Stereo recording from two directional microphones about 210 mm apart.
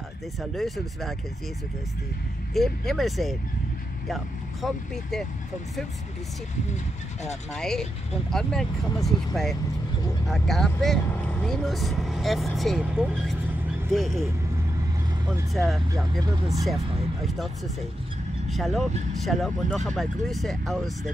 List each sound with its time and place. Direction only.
0.4 s speech: centre (ahead or behind)
2.5 s speech: centre (ahead or behind)
7.5 s speech: centre (ahead or behind)
15.5 s speech: centre (ahead or behind)
16.2 s speech: 15° right (ahead or behind)
18.5 s speech: centre (ahead or behind)